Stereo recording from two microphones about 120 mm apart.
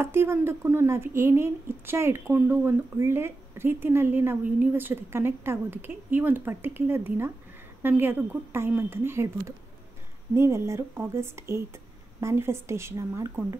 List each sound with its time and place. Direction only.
0.0 s speech: 20° right (ahead or behind)
10.3 s speech: 20° right (ahead or behind)